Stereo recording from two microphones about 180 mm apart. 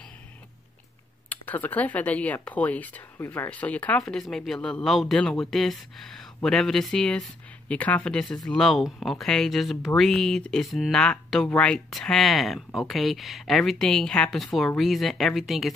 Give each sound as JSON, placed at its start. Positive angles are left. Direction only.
{"t": 1.3, "sound": "speech", "side_deg": 10}